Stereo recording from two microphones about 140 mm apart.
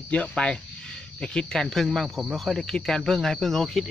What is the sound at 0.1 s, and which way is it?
Speech, 10° left (ahead or behind).